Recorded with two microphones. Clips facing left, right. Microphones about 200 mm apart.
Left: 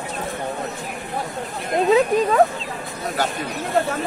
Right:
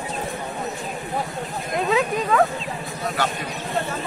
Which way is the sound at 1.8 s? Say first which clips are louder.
Left 6 dB; 35° left (ahead or behind).